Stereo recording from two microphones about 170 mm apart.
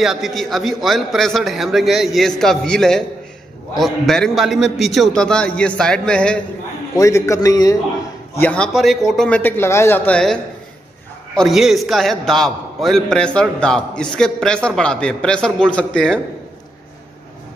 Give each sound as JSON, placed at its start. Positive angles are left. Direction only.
{"t": 0.0, "sound": "a man's voice", "side_deg": 0}
{"t": 7.0, "sound": "a man's voice", "side_deg": 20}
{"t": 8.4, "sound": "a man's voice", "side_deg": 10}